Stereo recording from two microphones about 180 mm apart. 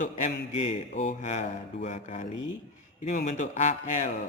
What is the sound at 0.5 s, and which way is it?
A man's voice, 35° left (ahead or behind).